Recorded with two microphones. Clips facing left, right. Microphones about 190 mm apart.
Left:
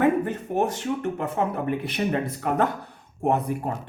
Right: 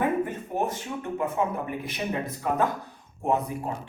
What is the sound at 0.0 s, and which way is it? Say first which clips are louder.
Speech: left 4 dB; 75° left (ahead or behind).